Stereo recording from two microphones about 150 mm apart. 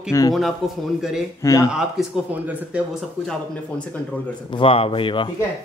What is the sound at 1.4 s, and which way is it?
Speech, 20° left (ahead or behind).